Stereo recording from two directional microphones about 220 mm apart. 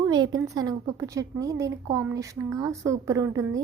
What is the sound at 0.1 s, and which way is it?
A woman's voice, 20° right (ahead or behind).